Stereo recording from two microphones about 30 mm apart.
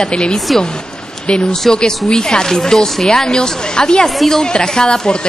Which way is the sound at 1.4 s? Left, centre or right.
Centre.